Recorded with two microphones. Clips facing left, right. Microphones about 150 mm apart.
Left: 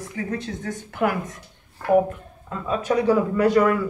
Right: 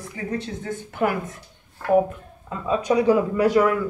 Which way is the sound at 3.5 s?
Centre (ahead or behind).